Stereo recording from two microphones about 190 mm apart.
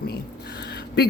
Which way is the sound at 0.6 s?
60° left (ahead or behind).